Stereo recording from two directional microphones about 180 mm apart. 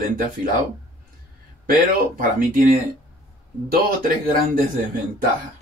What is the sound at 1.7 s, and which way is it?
Speech, 50° right (ahead or behind).